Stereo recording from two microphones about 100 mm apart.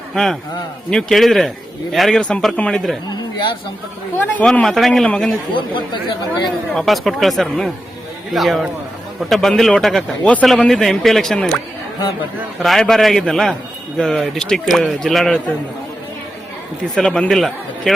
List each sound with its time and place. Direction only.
0.1 s a man's voice: 5° left (ahead or behind)
3.1 s a sound: 45° left (ahead or behind)
4.6 s a man's voice: 5° left (ahead or behind)
5.5 s speech: 55° left (ahead or behind)
6.7 s a man's voice: centre (ahead or behind)
12.6 s a man's voice: 5° left (ahead or behind)
16.9 s a man's voice: 5° left (ahead or behind)